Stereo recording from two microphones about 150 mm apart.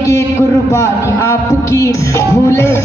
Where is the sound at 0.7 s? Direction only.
20° left (ahead or behind).